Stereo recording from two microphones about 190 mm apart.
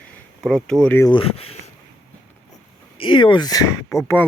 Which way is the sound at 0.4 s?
5° left (ahead or behind).